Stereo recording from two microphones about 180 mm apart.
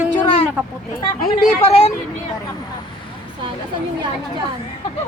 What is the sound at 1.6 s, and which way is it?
Speech, 35° left (ahead or behind).